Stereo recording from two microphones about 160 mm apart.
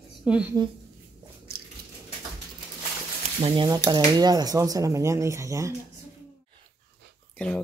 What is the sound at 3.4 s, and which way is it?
Speech, 30° right (ahead or behind).